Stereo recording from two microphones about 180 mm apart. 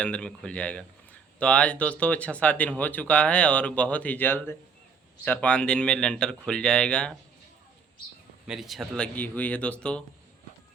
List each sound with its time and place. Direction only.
0.0 s speech: 5° left (ahead or behind)
8.4 s speech: centre (ahead or behind)